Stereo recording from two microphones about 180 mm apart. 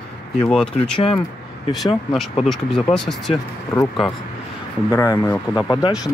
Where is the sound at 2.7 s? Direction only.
5° left (ahead or behind).